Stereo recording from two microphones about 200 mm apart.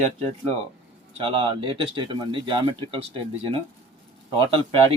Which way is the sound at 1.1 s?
25° right (ahead or behind).